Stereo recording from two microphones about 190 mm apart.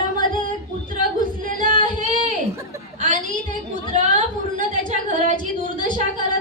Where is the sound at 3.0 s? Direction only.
45° right (ahead or behind).